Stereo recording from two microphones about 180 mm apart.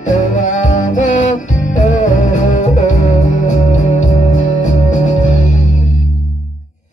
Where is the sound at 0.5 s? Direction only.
40° left (ahead or behind).